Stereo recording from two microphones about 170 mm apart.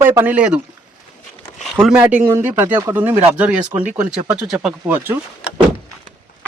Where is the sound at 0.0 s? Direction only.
10° right (ahead or behind).